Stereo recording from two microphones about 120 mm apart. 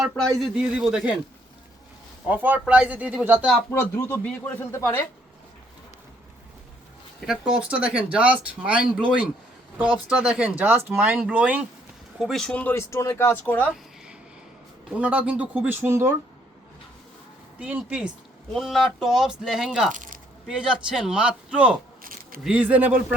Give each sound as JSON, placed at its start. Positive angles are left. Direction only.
{"t": 0.5, "sound": "speech", "side_deg": -5}
{"t": 2.2, "sound": "speech", "side_deg": -15}
{"t": 3.7, "sound": "speech", "side_deg": 20}
{"t": 7.3, "sound": "speech", "side_deg": -5}
{"t": 12.2, "sound": "speech", "side_deg": 5}
{"t": 12.7, "sound": "speech", "side_deg": 25}
{"t": 14.8, "sound": "speech", "side_deg": -10}
{"t": 17.6, "sound": "speech", "side_deg": -10}